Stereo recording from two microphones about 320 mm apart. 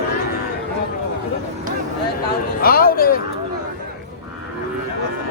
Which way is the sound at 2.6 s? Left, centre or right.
Left.